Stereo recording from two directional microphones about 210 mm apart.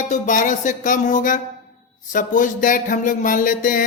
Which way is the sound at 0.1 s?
40° left (ahead or behind).